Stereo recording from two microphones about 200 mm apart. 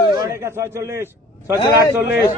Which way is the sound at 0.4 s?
15° right (ahead or behind).